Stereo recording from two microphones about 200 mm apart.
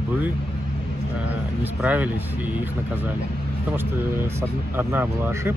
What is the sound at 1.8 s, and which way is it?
Speech, 5° right (ahead or behind).